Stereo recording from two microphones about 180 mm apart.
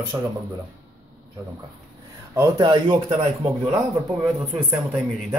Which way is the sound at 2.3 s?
20° right (ahead or behind).